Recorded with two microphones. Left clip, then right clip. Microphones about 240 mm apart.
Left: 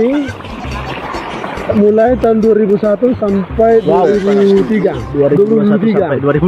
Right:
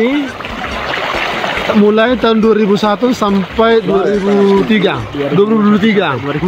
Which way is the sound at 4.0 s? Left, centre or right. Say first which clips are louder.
Left 2 dB; centre.